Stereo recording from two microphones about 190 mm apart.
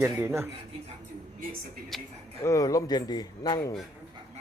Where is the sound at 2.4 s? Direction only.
15° left (ahead or behind).